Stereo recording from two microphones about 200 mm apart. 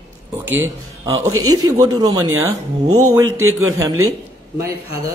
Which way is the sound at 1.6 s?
15° right (ahead or behind).